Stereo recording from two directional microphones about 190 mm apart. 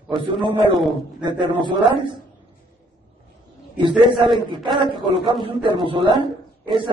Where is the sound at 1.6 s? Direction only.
25° right (ahead or behind).